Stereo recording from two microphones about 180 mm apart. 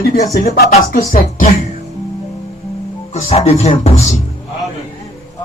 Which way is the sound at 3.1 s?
35° left (ahead or behind).